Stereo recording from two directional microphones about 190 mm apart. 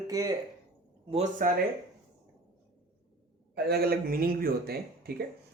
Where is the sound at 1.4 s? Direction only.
45° right (ahead or behind).